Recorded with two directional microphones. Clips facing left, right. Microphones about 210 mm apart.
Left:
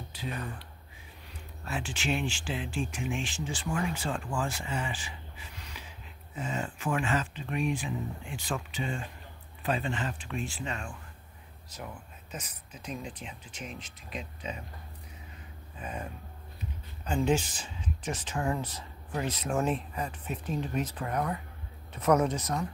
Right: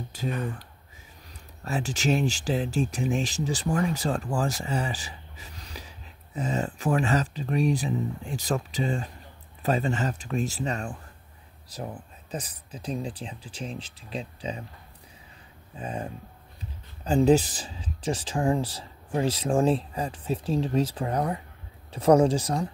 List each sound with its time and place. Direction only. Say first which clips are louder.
0.1 s speech: right 7 dB; 45° right (ahead or behind)
15.8 s speech: right 5 dB; 30° right (ahead or behind)